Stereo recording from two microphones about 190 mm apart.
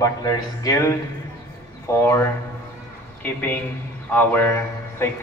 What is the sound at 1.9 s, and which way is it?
A man's voice, 15° left (ahead or behind).